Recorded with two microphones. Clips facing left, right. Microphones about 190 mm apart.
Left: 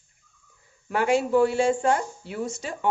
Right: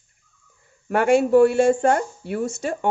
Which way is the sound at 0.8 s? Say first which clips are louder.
Right 5 dB; 55° right (ahead or behind).